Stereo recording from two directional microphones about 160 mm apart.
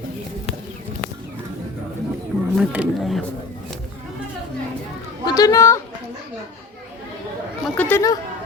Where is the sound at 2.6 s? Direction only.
Centre (ahead or behind).